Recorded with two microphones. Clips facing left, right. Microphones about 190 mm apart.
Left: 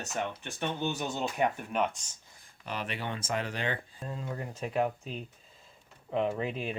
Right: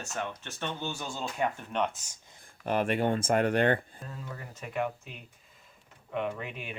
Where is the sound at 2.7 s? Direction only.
50° right (ahead or behind).